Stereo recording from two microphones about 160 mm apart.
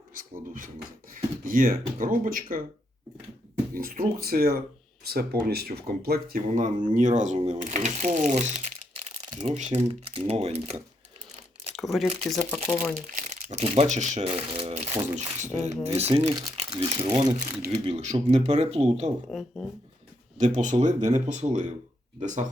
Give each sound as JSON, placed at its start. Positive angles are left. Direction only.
{"t": 0.1, "sound": "speech", "side_deg": -60}
{"t": 3.8, "sound": "speech", "side_deg": -65}
{"t": 11.7, "sound": "speech", "side_deg": 0}
{"t": 12.6, "sound": "speech", "side_deg": 10}
{"t": 13.1, "sound": "speech", "side_deg": -50}
{"t": 19.3, "sound": "speech", "side_deg": 0}
{"t": 20.4, "sound": "speech", "side_deg": -50}